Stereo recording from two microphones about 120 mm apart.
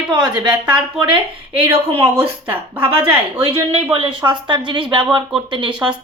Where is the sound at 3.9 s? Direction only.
45° right (ahead or behind).